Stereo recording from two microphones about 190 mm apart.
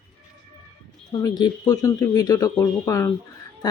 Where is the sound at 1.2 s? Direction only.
20° left (ahead or behind).